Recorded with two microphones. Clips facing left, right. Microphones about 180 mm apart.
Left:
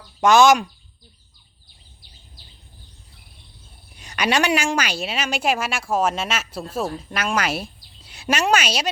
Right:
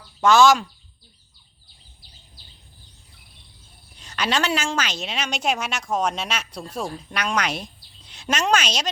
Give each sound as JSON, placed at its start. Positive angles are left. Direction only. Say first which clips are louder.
{"t": 0.2, "sound": "a woman's voice", "louder": "left 2 dB", "side_deg": 15}
{"t": 3.9, "sound": "a woman's voice", "louder": "left 3 dB", "side_deg": 10}